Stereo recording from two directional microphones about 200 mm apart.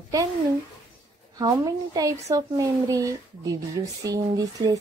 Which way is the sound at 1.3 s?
20° right (ahead or behind).